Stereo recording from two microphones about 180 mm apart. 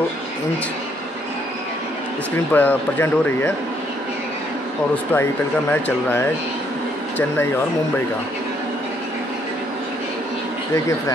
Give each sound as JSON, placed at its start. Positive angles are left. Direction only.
{"t": 2.3, "sound": "speech", "side_deg": 10}
{"t": 5.1, "sound": "speech", "side_deg": 10}
{"t": 10.7, "sound": "speech", "side_deg": 15}